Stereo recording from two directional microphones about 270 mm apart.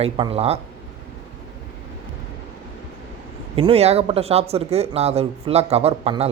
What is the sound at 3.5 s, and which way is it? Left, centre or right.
Speech, right.